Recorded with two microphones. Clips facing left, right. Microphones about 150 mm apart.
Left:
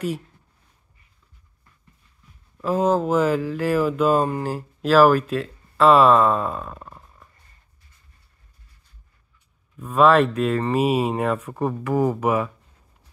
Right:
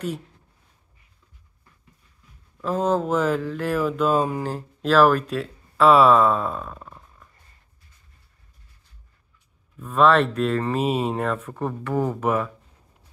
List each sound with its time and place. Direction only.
2.6 s speech: 5° left (ahead or behind)
9.8 s speech: 10° left (ahead or behind)